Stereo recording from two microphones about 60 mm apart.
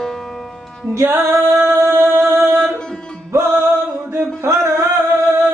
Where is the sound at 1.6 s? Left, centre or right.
Right.